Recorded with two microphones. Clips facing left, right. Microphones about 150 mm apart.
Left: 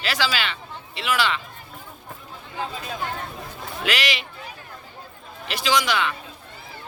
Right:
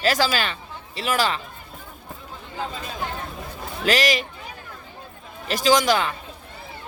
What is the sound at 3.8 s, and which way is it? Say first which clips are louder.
Speech: right 6 dB; 40° right (ahead or behind).